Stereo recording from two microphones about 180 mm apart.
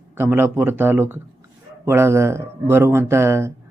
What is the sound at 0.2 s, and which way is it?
A man's voice, 10° right (ahead or behind).